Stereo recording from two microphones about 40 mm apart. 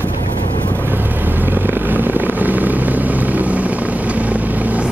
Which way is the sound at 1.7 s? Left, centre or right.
Right.